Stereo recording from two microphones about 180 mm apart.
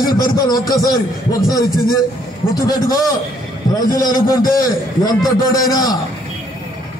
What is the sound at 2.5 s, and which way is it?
A man's voice, 20° left (ahead or behind).